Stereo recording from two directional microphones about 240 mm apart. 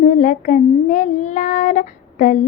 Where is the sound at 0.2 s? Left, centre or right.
Left.